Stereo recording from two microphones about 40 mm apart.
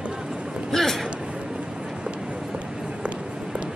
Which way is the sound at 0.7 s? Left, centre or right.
Centre.